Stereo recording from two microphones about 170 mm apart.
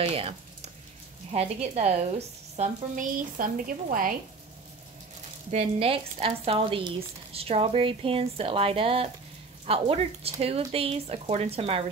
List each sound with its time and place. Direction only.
0.0 s speech: 35° right (ahead or behind); by 4.1 s 55° right (ahead or behind)
5.5 s speech: 40° right (ahead or behind)